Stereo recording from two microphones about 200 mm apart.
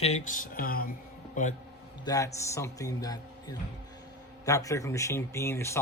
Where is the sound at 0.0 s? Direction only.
35° left (ahead or behind).